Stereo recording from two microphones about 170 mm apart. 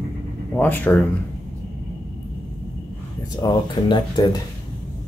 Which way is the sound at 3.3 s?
25° left (ahead or behind).